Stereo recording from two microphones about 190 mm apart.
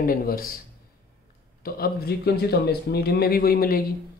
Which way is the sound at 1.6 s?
55° left (ahead or behind).